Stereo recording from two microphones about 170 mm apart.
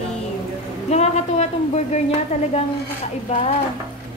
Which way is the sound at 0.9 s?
40° left (ahead or behind).